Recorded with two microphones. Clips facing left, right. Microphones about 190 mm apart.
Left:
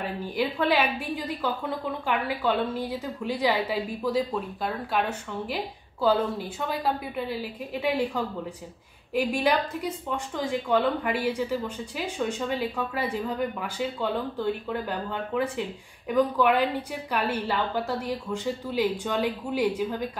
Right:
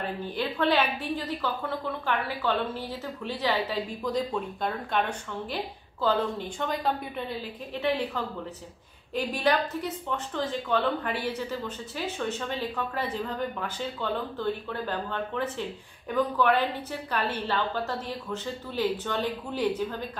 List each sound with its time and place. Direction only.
0.0 s a woman's voice: 10° left (ahead or behind)